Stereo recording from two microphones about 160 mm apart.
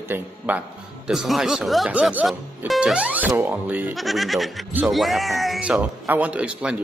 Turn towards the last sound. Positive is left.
turn(degrees=-5)  # may be behind; listen again after turning